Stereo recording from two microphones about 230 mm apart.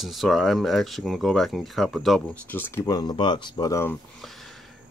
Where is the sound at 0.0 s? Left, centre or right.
Centre.